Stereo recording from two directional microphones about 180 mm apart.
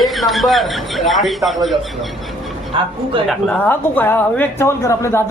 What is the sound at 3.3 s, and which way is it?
Speech, 5° left (ahead or behind).